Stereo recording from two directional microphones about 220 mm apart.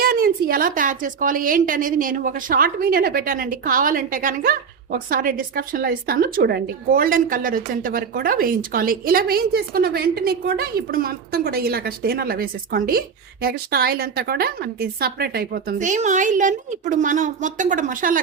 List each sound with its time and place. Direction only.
0.0 s a woman's voice: 40° right (ahead or behind)